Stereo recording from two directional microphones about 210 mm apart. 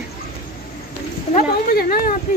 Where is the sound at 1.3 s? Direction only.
45° left (ahead or behind).